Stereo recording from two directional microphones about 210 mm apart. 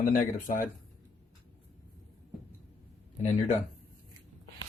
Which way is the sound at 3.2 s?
35° left (ahead or behind).